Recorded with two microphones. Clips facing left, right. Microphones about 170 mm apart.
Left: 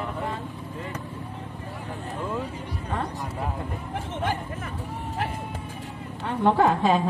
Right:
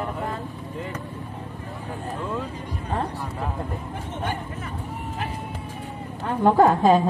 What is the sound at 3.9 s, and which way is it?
Speech, 90° left.